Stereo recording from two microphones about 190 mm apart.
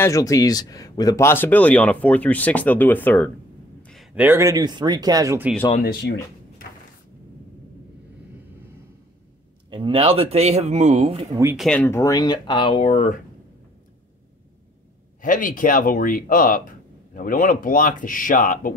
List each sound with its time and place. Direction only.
0.0 s speech: 15° left (ahead or behind); by 5.5 s 15° right (ahead or behind)
6.0 s speech: 60° left (ahead or behind)
9.7 s speech: 25° right (ahead or behind)
11.5 s speech: 5° left (ahead or behind); by 13.2 s 35° left (ahead or behind)
15.2 s speech: 45° left (ahead or behind)